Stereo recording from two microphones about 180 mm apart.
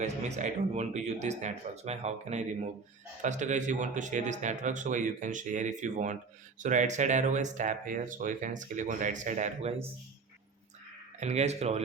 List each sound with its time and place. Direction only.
0.0 s speech: 40° right (ahead or behind)
11.2 s speech: 40° right (ahead or behind)